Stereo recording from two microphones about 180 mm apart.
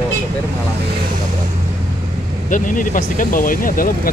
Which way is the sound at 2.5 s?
50° left (ahead or behind).